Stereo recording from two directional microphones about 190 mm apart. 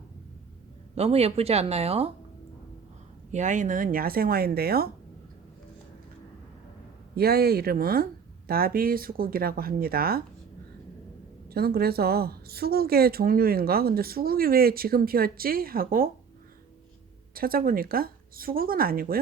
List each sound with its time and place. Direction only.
0.9 s speech: 35° right (ahead or behind)
3.3 s speech: 40° right (ahead or behind)
7.2 s speech: 55° right (ahead or behind)
11.4 s speech: 55° right (ahead or behind)
17.3 s speech: 50° right (ahead or behind)